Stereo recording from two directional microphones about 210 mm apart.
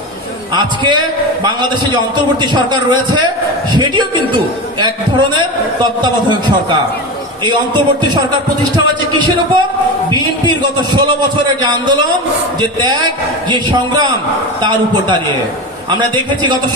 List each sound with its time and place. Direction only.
0.6 s a man's voice: 20° right (ahead or behind)